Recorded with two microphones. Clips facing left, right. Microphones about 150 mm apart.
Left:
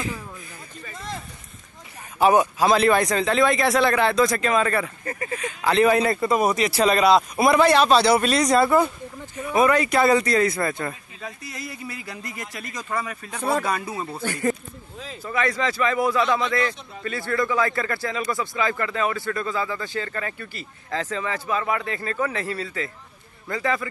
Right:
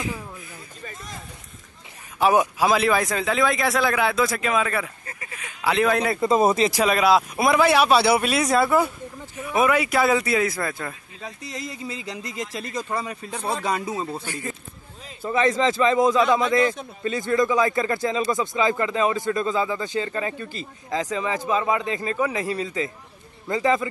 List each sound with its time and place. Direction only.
2.3 s speech: 10° right (ahead or behind)
6.1 s a man's voice: 25° right (ahead or behind)
6.7 s speech: 5° right (ahead or behind)
11.2 s a man's voice: 20° right (ahead or behind)
15.2 s a man's voice: 25° right (ahead or behind)